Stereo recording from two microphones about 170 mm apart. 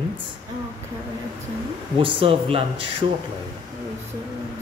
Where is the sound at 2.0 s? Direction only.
30° right (ahead or behind).